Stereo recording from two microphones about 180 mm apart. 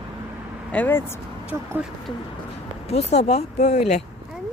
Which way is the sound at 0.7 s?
10° left (ahead or behind).